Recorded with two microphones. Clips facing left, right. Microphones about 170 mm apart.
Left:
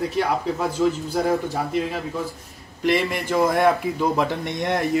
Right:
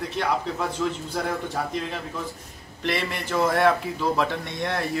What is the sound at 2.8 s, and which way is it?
Speech, 10° left (ahead or behind).